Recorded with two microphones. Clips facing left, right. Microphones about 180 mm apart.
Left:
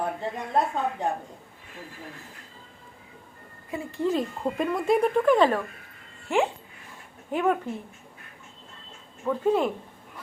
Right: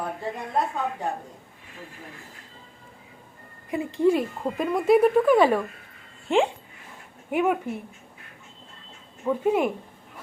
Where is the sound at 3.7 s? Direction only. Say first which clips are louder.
Right 5 dB; 15° right (ahead or behind).